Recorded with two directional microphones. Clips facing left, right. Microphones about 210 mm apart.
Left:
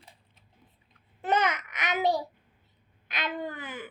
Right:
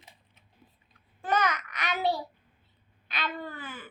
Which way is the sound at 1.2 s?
25° left (ahead or behind).